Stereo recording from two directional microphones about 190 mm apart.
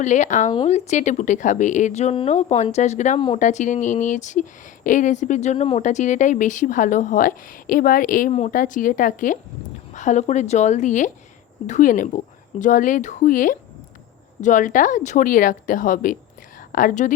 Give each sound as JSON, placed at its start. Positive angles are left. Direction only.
{"t": 0.0, "sound": "speech", "side_deg": 40}